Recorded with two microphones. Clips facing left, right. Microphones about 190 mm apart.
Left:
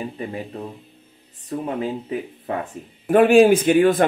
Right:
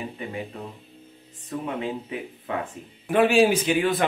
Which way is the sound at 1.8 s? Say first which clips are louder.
Left 4 dB; 40° left (ahead or behind).